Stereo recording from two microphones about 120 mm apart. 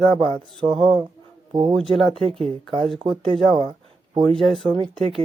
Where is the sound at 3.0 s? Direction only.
50° right (ahead or behind).